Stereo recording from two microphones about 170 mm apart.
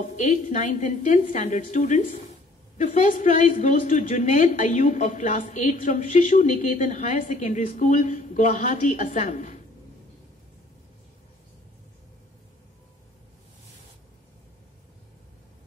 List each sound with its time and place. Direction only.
0.1 s a woman's voice: 45° left (ahead or behind)